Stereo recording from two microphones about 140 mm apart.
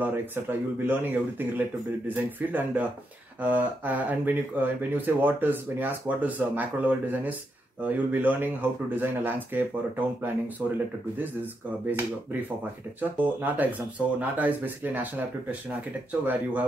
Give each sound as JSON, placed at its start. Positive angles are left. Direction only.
{"t": 0.0, "sound": "speech", "side_deg": -15}
{"t": 11.9, "sound": "speech", "side_deg": -15}